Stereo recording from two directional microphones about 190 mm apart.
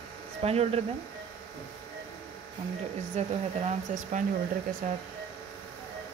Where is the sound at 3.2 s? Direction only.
35° right (ahead or behind).